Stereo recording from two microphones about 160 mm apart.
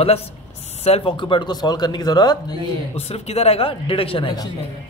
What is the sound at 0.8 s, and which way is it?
Speech, 35° left (ahead or behind).